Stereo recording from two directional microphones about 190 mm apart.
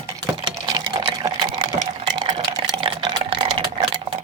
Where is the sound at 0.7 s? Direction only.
20° right (ahead or behind).